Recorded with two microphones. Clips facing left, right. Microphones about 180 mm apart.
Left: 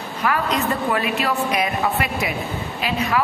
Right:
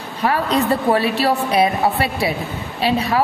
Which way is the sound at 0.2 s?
35° right (ahead or behind).